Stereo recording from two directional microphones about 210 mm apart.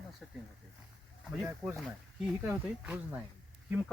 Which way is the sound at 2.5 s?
5° right (ahead or behind).